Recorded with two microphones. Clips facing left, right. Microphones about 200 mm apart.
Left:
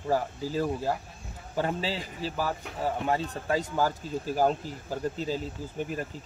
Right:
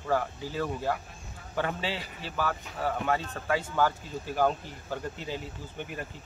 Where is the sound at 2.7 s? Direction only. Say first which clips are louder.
Left 1 dB; 15° left (ahead or behind).